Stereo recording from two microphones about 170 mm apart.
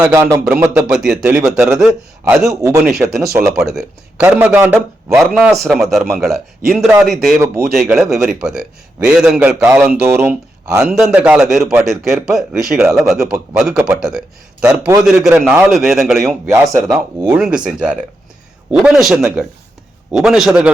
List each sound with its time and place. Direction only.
0.0 s a man's voice: 15° right (ahead or behind)
0.8 s a man's voice: 5° right (ahead or behind)
2.5 s a man's voice: 20° right (ahead or behind)
3.6 s a man's voice: centre (ahead or behind)
5.3 s a man's voice: 5° right (ahead or behind)
7.3 s a man's voice: 15° right (ahead or behind)
7.7 s a man's voice: centre (ahead or behind); by 10.8 s 15° right (ahead or behind)
10.8 s a man's voice: 5° right (ahead or behind)
16.7 s speech: 20° right (ahead or behind)
17.3 s a man's voice: 5° right (ahead or behind)